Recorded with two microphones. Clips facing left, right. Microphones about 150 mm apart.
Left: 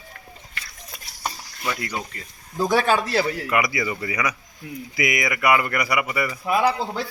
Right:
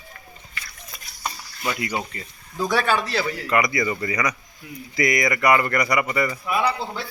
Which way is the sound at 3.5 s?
10° left (ahead or behind).